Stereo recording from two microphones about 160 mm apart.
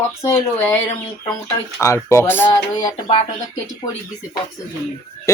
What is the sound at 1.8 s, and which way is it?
Speech, 15° left (ahead or behind).